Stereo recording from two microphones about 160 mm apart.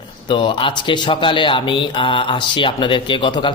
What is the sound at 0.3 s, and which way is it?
Speech, 30° left (ahead or behind).